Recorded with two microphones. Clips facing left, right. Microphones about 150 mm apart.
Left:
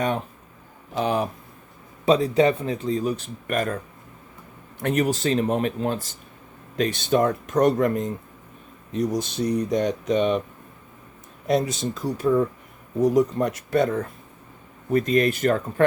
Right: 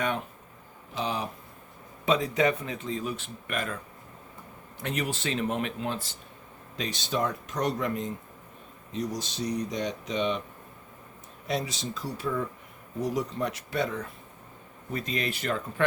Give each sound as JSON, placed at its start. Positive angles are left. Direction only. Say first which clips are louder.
{"t": 0.9, "sound": "speech", "louder": "left 8 dB", "side_deg": 55}
{"t": 2.0, "sound": "speech", "louder": "left 6 dB", "side_deg": 35}
{"t": 4.8, "sound": "speech", "louder": "left 9 dB", "side_deg": 50}
{"t": 6.7, "sound": "speech", "louder": "left 9 dB", "side_deg": 55}
{"t": 11.4, "sound": "speech", "louder": "left 9 dB", "side_deg": 50}